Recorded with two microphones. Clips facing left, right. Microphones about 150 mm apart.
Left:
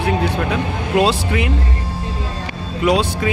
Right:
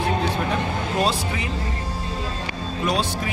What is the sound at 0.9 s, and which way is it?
Speech, 80° left.